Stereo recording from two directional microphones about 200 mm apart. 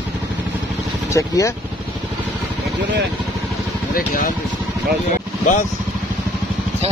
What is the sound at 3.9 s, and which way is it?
Speech, 45° left (ahead or behind).